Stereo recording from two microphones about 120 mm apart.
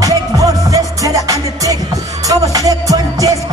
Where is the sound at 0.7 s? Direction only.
30° right (ahead or behind).